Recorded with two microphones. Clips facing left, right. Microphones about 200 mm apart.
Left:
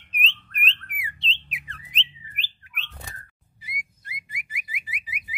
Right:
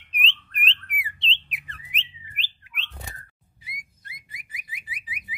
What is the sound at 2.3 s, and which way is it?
Bird, 50° left (ahead or behind).